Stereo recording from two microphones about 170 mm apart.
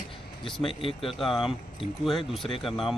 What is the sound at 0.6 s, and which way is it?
Speech, 35° left (ahead or behind).